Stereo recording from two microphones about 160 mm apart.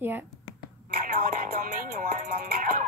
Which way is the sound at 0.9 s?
65° right (ahead or behind).